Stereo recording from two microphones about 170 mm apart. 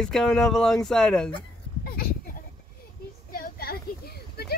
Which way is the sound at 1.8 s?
65° left (ahead or behind).